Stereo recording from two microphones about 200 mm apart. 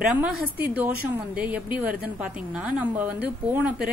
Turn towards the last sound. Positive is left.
turn(degrees=-10)  # may be behind; listen again after turning